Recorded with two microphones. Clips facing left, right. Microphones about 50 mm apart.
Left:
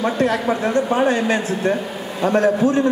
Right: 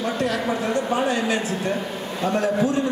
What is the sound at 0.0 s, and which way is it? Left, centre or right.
A man's voice, left.